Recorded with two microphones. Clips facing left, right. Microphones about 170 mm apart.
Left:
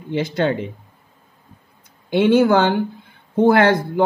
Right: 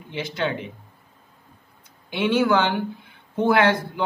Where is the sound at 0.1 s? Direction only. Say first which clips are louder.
Left 7 dB; 45° left (ahead or behind).